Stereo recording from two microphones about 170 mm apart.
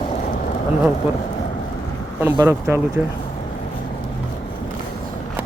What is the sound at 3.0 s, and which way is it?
Speech, 10° right (ahead or behind).